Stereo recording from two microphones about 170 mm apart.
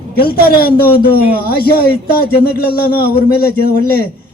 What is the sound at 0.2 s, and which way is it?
A man's voice, 65° left (ahead or behind).